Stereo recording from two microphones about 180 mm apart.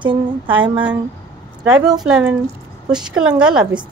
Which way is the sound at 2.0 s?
5° right (ahead or behind).